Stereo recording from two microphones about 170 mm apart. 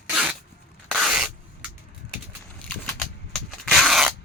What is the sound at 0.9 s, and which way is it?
Spray, 5° right (ahead or behind).